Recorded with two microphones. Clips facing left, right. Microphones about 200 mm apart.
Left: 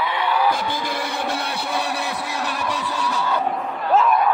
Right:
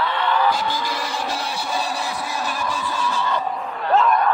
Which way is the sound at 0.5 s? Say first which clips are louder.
Even; 55° left (ahead or behind).